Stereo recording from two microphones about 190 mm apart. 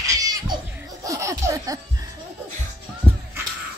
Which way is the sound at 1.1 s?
15° right (ahead or behind).